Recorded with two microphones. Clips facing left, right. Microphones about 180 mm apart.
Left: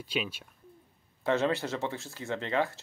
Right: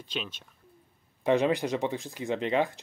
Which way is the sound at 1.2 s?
15° right (ahead or behind).